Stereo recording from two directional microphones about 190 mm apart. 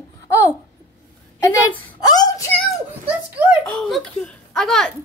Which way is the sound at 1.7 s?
20° left (ahead or behind).